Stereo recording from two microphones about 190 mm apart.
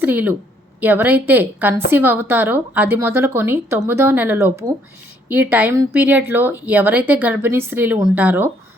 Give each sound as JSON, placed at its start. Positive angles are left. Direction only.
{"t": 0.0, "sound": "a woman's voice", "side_deg": -10}